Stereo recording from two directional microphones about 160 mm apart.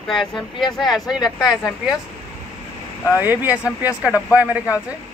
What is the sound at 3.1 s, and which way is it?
Speech, 10° right (ahead or behind).